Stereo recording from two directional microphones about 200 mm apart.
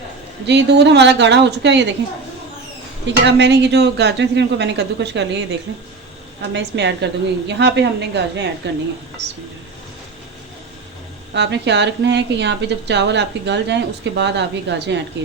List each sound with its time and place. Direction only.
0.4 s a woman's voice: 60° right (ahead or behind)
3.2 s a woman's voice: 60° right (ahead or behind)
11.3 s a woman's voice: 60° right (ahead or behind)